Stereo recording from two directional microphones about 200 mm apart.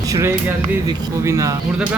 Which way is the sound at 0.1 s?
15° right (ahead or behind).